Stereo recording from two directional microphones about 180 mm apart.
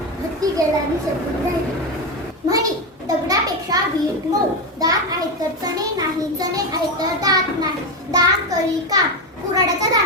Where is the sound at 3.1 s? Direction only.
20° right (ahead or behind).